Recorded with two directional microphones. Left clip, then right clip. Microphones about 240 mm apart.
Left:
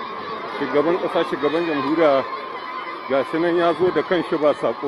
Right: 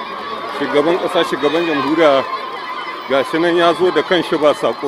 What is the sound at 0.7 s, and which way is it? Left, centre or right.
Speech, centre.